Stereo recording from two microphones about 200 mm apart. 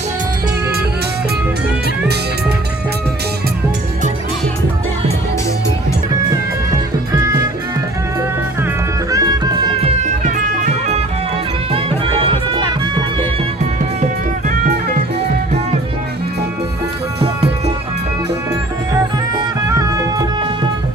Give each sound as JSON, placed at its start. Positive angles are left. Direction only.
{"t": 7.2, "sound": "music", "side_deg": -15}
{"t": 9.0, "sound": "music", "side_deg": -20}
{"t": 9.8, "sound": "music", "side_deg": -35}
{"t": 14.0, "sound": "music", "side_deg": -40}
{"t": 17.2, "sound": "music", "side_deg": -30}
{"t": 19.6, "sound": "music", "side_deg": -15}